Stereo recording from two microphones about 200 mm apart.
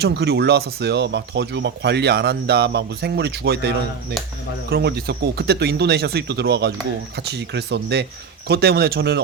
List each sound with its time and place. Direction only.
0.0 s speech: 55° right (ahead or behind)